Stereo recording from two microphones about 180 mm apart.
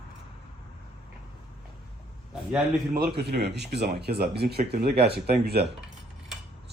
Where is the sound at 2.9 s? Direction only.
60° right (ahead or behind).